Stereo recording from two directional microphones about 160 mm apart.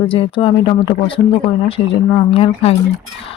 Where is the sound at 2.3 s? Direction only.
40° left (ahead or behind).